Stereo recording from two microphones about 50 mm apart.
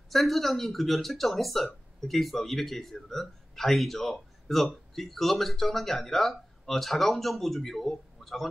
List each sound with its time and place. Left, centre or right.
0.1 s a man's voice: centre